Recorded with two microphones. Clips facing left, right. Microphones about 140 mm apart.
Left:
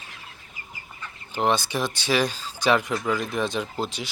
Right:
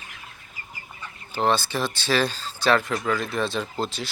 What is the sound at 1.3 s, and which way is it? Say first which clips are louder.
Speech: even; 15° left (ahead or behind).